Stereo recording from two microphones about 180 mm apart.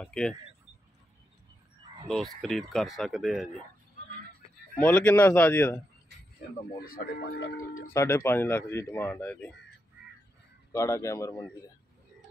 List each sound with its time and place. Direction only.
0.0 s speech: 5° left (ahead or behind)
2.0 s speech: centre (ahead or behind)
4.8 s speech: 5° left (ahead or behind)
6.8 s speech: 55° left (ahead or behind)
7.9 s speech: 15° left (ahead or behind)
10.7 s speech: 15° left (ahead or behind)